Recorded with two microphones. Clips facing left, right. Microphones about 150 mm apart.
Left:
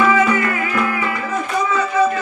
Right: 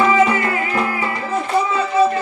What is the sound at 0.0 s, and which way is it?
Music, 30° right (ahead or behind).